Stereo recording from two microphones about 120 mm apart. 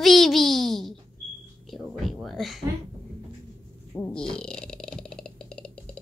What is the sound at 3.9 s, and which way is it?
Speech, 15° left (ahead or behind).